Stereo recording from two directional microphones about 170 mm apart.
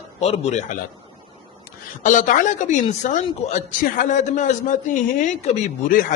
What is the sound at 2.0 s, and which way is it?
A man's voice, 50° left (ahead or behind).